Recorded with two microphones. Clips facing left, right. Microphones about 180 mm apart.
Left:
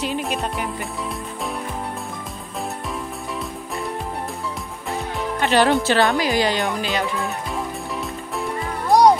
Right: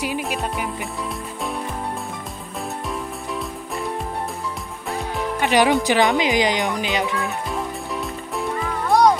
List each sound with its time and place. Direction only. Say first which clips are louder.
0.0 s music: left 1 dB; 5° right (ahead or behind)
5.4 s music: even; 15° right (ahead or behind)
5.8 s speech: even; 15° right (ahead or behind)
7.2 s music: right 1 dB; centre (ahead or behind)
8.8 s music: left 2 dB; 35° left (ahead or behind)